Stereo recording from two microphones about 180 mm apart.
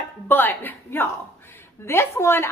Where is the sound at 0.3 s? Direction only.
10° left (ahead or behind).